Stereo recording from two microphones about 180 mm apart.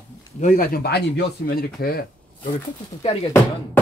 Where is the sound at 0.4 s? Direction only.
50° left (ahead or behind).